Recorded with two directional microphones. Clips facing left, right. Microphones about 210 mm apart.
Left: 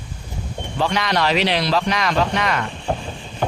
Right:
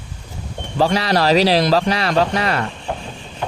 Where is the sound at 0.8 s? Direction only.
35° right (ahead or behind).